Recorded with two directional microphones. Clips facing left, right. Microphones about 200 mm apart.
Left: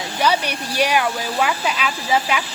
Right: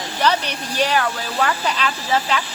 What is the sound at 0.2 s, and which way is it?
A woman's voice, 10° left (ahead or behind).